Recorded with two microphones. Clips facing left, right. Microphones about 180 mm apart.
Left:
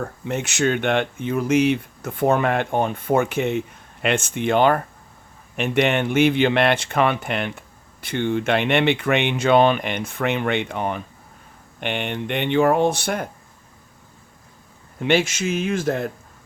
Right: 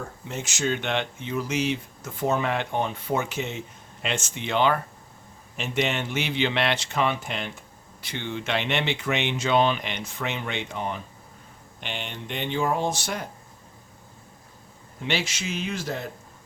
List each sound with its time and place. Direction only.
0.3 s speech: 60° left (ahead or behind)
5.5 s speech: 60° left (ahead or behind)
15.0 s speech: 50° left (ahead or behind)